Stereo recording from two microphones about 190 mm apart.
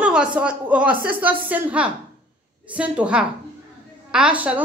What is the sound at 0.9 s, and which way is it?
Speech, 50° right (ahead or behind).